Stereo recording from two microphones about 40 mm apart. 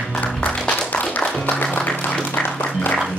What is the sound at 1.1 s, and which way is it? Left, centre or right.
Music, left.